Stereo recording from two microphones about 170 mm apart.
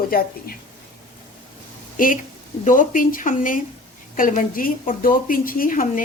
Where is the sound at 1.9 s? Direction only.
55° left (ahead or behind).